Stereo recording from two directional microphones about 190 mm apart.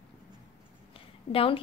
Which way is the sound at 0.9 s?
30° left (ahead or behind).